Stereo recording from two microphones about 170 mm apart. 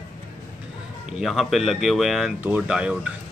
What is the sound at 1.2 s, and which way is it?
Speech, centre (ahead or behind).